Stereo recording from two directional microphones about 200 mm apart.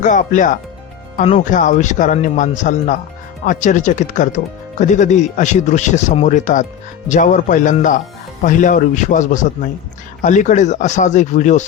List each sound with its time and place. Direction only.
0.0 s speech: 40° left (ahead or behind)